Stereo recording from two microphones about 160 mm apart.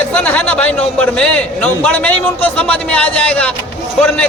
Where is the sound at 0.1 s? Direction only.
10° left (ahead or behind).